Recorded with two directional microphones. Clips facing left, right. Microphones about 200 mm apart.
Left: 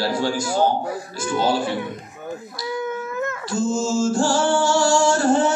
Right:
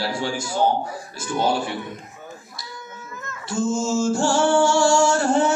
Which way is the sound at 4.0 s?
25° right (ahead or behind).